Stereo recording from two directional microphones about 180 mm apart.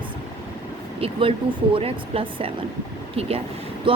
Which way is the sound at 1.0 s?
30° right (ahead or behind).